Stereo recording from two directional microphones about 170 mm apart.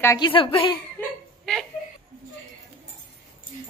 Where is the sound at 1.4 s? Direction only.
5° left (ahead or behind).